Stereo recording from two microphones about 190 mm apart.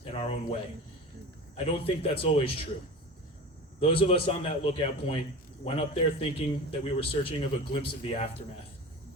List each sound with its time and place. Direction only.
0.1 s a sound: 30° left (ahead or behind)
1.5 s speech: 30° left (ahead or behind)
3.8 s speech: 30° left (ahead or behind)